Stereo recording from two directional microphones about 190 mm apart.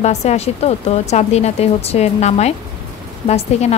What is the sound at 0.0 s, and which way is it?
A woman's voice, 35° left (ahead or behind).